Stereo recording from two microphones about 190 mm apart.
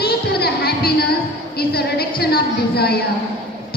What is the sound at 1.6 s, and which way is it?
A woman's voice, 55° left (ahead or behind).